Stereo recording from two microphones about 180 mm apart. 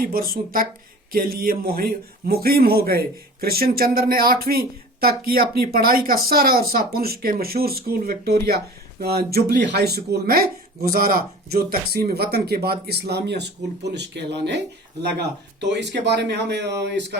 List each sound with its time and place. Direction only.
0.0 s speech: 55° right (ahead or behind); by 14.6 s 70° right (ahead or behind)
15.6 s speech: 70° right (ahead or behind)